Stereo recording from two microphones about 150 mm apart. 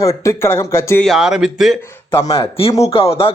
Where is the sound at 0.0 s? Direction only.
20° left (ahead or behind).